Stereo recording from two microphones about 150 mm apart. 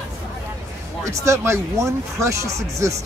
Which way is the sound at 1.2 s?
20° right (ahead or behind).